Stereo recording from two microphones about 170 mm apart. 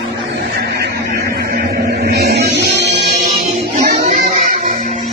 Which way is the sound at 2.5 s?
90° right.